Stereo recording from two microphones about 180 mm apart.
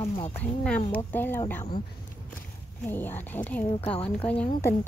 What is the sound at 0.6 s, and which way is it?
Speech, 5° left (ahead or behind).